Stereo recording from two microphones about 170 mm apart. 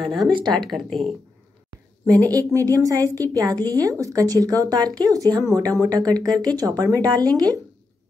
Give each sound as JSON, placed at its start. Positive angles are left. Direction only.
{"t": 0.0, "sound": "speech", "side_deg": 0}
{"t": 2.3, "sound": "a woman's voice", "side_deg": -20}